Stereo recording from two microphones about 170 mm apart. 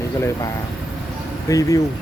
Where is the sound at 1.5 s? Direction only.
20° left (ahead or behind).